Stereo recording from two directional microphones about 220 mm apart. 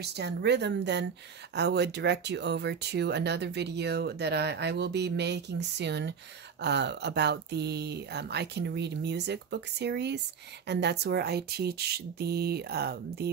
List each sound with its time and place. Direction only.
0.0 s speech: 50° right (ahead or behind)